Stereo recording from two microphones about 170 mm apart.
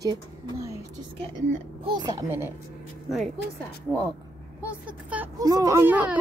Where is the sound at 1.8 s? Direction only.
25° right (ahead or behind).